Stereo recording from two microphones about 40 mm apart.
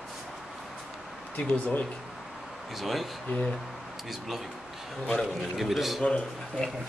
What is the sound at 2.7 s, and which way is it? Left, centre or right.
Speech, centre.